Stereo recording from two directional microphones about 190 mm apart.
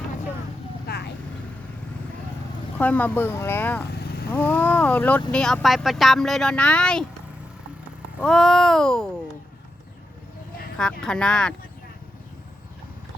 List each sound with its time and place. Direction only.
0.9 s vehicle: 60° left (ahead or behind)
2.7 s speech: 10° left (ahead or behind)
3.8 s vehicle: 60° left (ahead or behind)
4.3 s a sound: 10° left (ahead or behind)
5.3 s speech: 5° left (ahead or behind)
8.2 s speech: 5° left (ahead or behind)
10.8 s speech: 5° left (ahead or behind)